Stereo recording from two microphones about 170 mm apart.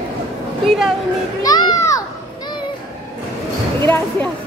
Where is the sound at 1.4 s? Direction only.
25° left (ahead or behind).